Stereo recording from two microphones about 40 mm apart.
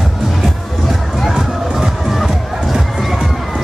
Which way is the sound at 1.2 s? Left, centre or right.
Centre.